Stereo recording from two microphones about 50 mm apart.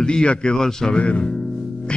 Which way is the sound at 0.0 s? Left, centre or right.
Centre.